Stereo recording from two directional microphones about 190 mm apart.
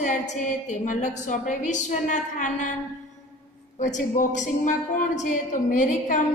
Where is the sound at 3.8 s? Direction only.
40° left (ahead or behind).